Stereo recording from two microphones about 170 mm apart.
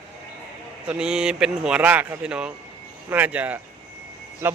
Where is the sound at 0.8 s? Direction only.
5° right (ahead or behind).